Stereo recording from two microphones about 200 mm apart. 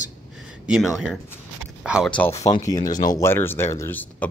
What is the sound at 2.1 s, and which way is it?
A man's voice, 15° left (ahead or behind).